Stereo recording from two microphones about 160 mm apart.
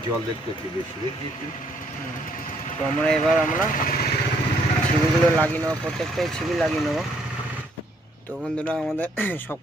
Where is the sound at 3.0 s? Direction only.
5° left (ahead or behind).